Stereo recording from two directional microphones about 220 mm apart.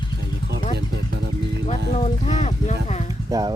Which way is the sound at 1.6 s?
30° left (ahead or behind).